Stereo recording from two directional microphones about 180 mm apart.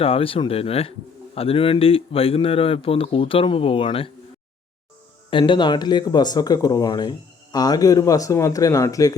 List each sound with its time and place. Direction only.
0.0 s speech: 30° left (ahead or behind)
5.3 s speech: 25° left (ahead or behind)